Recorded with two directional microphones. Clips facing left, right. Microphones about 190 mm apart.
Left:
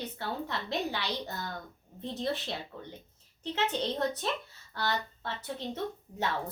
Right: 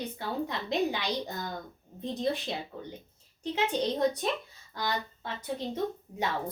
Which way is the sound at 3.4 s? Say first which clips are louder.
Right 3 dB; 10° right (ahead or behind).